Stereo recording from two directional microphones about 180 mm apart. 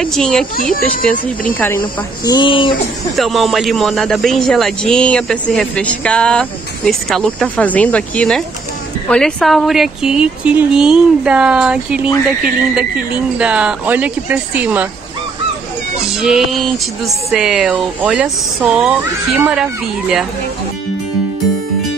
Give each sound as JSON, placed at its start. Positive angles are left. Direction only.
{"t": 0.0, "sound": "a man's voice", "side_deg": 5}
{"t": 0.6, "sound": "speech", "side_deg": 50}
{"t": 1.8, "sound": "speech", "side_deg": 25}
{"t": 3.2, "sound": "a man's voice", "side_deg": 0}
{"t": 16.0, "sound": "a man's voice", "side_deg": 0}